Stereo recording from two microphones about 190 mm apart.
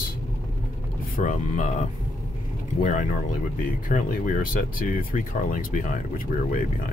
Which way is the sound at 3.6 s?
45° left (ahead or behind).